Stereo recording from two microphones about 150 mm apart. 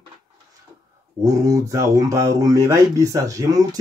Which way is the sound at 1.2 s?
20° right (ahead or behind).